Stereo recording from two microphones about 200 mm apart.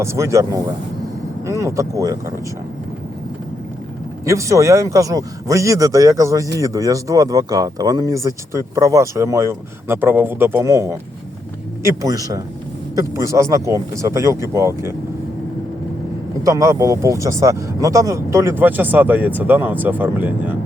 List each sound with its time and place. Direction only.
0.0 s a man's voice: 15° right (ahead or behind)
4.3 s a man's voice: 15° right (ahead or behind)
16.4 s a man's voice: 15° right (ahead or behind)